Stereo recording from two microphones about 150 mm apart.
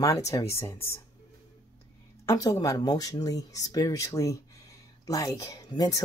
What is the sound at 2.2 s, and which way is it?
Speech, 25° left (ahead or behind).